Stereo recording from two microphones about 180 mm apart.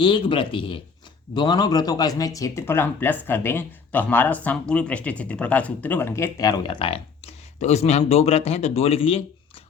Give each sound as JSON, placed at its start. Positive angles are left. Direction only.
{"t": 0.0, "sound": "speech", "side_deg": 30}